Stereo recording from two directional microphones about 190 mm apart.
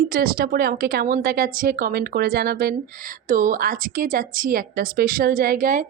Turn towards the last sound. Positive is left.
turn(degrees=-45)  # may be behind; listen again after turning